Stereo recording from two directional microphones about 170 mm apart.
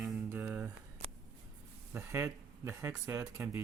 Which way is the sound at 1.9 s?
15° right (ahead or behind).